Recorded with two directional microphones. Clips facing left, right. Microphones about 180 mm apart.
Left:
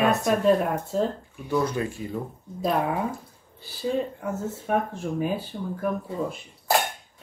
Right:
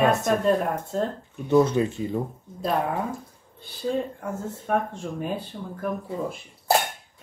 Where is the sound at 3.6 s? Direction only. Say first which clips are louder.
Even; 5° left (ahead or behind).